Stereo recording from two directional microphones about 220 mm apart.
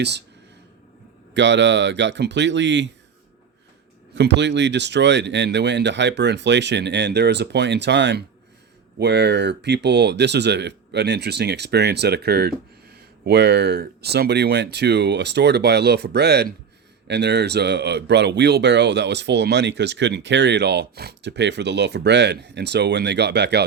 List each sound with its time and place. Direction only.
1.3 s speech: 55° right (ahead or behind)
4.1 s speech: 55° right (ahead or behind)